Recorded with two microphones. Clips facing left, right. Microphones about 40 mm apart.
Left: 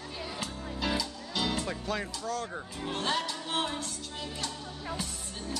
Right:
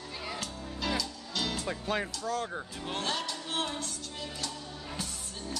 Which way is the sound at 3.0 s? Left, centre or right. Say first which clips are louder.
Left 3 dB; centre.